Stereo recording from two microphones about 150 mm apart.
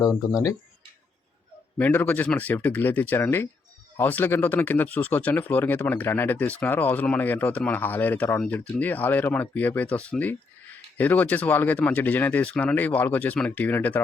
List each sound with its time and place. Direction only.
0.0 s speech: 25° left (ahead or behind)
1.8 s speech: 15° left (ahead or behind)